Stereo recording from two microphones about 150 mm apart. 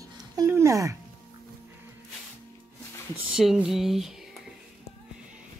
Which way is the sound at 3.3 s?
5° right (ahead or behind).